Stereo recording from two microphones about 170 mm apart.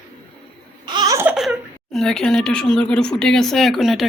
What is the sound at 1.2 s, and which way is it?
A woman's voice, 5° right (ahead or behind).